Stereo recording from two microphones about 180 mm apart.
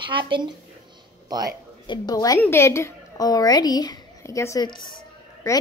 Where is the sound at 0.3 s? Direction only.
25° right (ahead or behind).